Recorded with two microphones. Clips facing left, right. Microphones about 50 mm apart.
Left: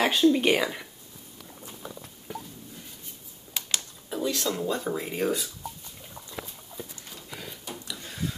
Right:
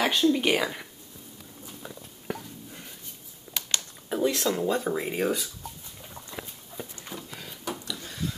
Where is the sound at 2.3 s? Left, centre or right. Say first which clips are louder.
Right 3 dB; right.